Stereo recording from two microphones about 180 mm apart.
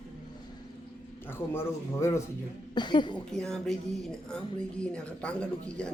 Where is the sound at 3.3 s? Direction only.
5° left (ahead or behind).